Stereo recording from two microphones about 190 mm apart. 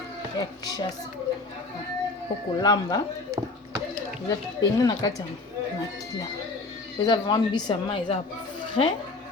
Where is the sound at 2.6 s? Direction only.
20° left (ahead or behind).